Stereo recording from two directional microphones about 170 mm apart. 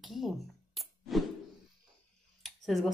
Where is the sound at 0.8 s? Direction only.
Centre (ahead or behind).